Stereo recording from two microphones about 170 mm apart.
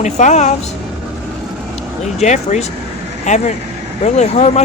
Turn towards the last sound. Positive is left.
turn(degrees=40)  # may be behind; listen again after turning